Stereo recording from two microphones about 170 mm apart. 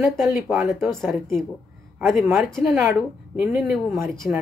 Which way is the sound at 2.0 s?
Centre (ahead or behind).